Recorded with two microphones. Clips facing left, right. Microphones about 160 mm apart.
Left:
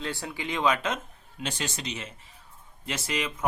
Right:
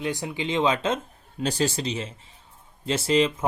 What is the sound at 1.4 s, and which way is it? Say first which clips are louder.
Speech: right 9 dB; 35° right (ahead or behind).